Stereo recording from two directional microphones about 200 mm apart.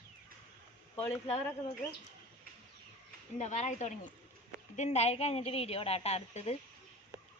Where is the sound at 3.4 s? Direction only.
35° left (ahead or behind).